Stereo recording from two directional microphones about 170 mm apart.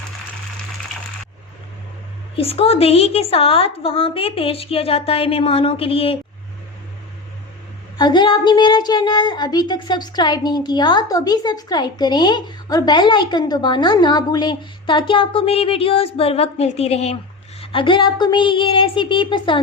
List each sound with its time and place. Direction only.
2.3 s a woman's voice: 35° left (ahead or behind)
7.9 s speech: 25° left (ahead or behind)